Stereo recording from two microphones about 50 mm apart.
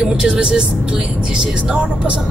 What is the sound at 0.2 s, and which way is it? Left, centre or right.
Speech, centre.